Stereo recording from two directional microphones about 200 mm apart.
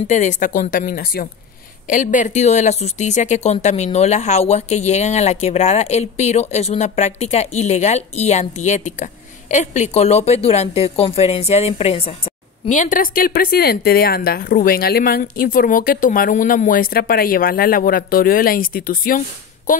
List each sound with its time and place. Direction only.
0.1 s speech: 40° left (ahead or behind)